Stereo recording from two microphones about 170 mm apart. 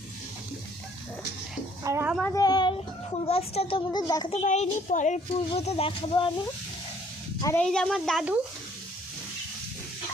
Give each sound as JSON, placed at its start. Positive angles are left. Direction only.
{"t": 1.8, "sound": "a woman's voice", "side_deg": -15}
{"t": 2.2, "sound": "speech", "side_deg": 20}
{"t": 4.3, "sound": "speech", "side_deg": 40}
{"t": 7.4, "sound": "speech", "side_deg": 10}